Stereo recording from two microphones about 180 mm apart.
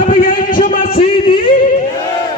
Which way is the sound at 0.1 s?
50° left (ahead or behind).